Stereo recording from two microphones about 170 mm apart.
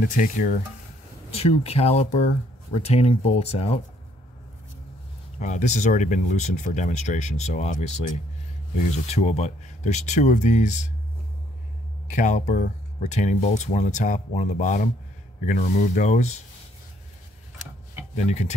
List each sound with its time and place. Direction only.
0.1 s speech: 55° left (ahead or behind)
1.3 s speech: 35° left (ahead or behind)
5.4 s speech: 45° left (ahead or behind)
12.1 s speech: 45° left (ahead or behind)
18.1 s speech: 40° left (ahead or behind)